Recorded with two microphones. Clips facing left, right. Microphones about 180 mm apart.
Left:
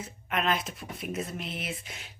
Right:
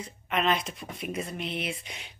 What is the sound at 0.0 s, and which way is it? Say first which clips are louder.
A woman's voice: right 2 dB; 5° left (ahead or behind).